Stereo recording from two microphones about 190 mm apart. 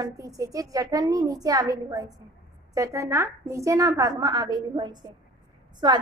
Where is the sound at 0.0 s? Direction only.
20° right (ahead or behind).